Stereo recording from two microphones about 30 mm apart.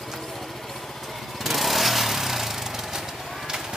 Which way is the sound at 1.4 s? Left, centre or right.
Centre.